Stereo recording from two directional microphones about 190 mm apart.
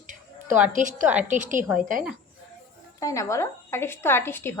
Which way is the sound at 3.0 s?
15° left (ahead or behind).